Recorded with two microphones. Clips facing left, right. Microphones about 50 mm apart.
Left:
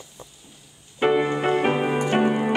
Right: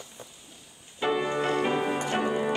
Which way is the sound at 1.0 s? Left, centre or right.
Left.